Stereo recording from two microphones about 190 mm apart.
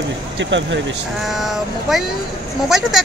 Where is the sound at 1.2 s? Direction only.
Centre (ahead or behind).